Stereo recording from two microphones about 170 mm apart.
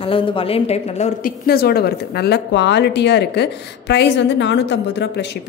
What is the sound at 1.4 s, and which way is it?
Speech, 65° left (ahead or behind).